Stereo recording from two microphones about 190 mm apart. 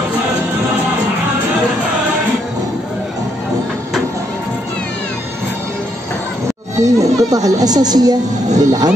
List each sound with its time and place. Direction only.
6.8 s speech: 15° right (ahead or behind)